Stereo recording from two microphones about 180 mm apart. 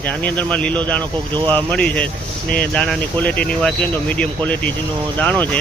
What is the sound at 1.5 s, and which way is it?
Speech, 10° left (ahead or behind).